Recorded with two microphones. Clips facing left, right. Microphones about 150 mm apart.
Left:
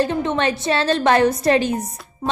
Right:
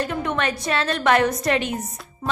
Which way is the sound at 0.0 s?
30° left (ahead or behind).